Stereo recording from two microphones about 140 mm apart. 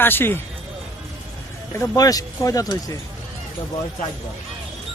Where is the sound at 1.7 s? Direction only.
25° left (ahead or behind).